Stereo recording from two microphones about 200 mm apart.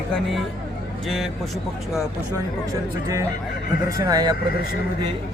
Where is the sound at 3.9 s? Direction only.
15° right (ahead or behind).